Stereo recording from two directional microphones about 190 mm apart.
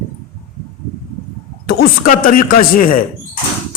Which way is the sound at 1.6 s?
50° left (ahead or behind).